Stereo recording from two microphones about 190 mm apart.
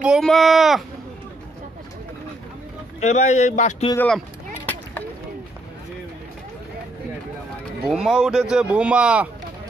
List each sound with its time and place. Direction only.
0.0 s speech: centre (ahead or behind)
3.0 s speech: 35° left (ahead or behind)
3.9 s speech: 10° left (ahead or behind)
7.8 s speech: 5° right (ahead or behind)